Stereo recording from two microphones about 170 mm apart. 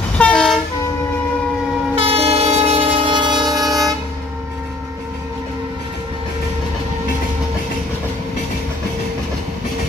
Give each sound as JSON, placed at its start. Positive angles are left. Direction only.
{"t": 0.2, "sound": "train", "side_deg": 5}
{"t": 2.0, "sound": "train", "side_deg": -35}